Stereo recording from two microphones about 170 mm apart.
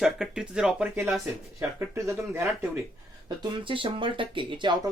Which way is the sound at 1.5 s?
15° right (ahead or behind).